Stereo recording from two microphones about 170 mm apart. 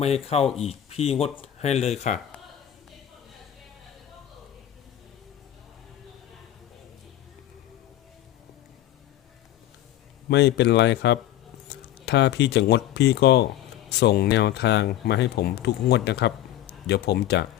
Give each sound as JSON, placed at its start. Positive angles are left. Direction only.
{"t": 0.0, "sound": "speech", "side_deg": 35}
{"t": 10.2, "sound": "speech", "side_deg": 85}
{"t": 16.8, "sound": "speech", "side_deg": 75}